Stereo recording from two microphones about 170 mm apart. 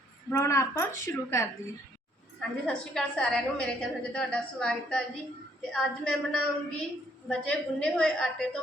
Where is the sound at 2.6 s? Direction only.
5° left (ahead or behind).